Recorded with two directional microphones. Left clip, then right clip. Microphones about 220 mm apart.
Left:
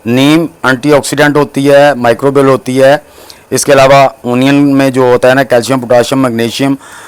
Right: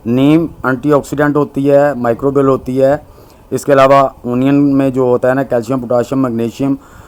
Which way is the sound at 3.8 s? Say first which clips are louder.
Left 3 dB; 30° left (ahead or behind).